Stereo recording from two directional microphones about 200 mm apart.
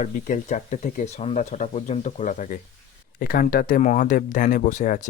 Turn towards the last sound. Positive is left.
turn(degrees=40)  # may be behind; listen again after turning